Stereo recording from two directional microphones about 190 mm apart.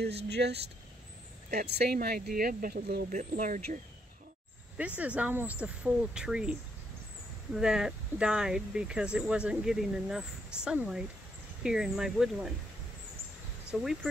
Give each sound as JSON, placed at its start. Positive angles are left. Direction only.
{"t": 0.3, "sound": "speech", "side_deg": -60}
{"t": 4.7, "sound": "speech", "side_deg": -5}
{"t": 7.5, "sound": "speech", "side_deg": -5}
{"t": 13.7, "sound": "speech", "side_deg": 0}